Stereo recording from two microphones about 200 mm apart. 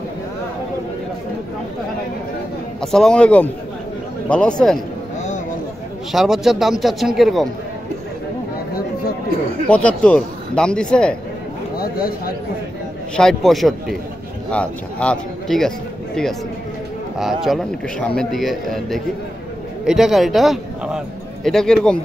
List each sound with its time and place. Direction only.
2.8 s speech: 5° left (ahead or behind)
6.1 s speech: centre (ahead or behind)
9.7 s speech: 5° left (ahead or behind)
11.7 s a sound: 50° left (ahead or behind)
13.1 s speech: 5° left (ahead or behind)
17.2 s speech: centre (ahead or behind)